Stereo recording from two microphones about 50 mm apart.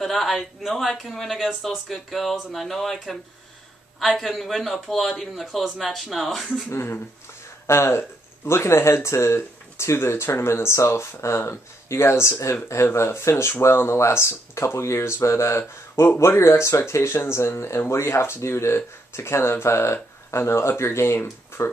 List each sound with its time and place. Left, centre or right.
0.0 s speech: centre
6.7 s speech: left
7.6 s speech: left